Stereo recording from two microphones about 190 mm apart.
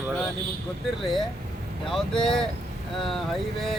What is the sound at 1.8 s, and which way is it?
Speech, centre (ahead or behind).